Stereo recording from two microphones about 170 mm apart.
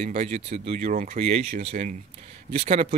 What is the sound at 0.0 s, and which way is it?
Speech, 35° right (ahead or behind).